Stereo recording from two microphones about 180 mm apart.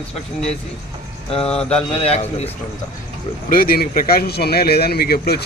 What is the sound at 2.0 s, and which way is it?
Speech, 35° left (ahead or behind).